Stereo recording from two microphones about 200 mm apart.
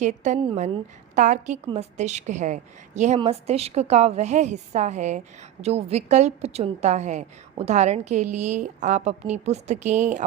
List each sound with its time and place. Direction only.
0.0 s a woman's voice: 35° right (ahead or behind)